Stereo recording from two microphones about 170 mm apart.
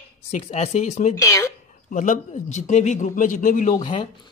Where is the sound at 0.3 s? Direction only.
45° left (ahead or behind).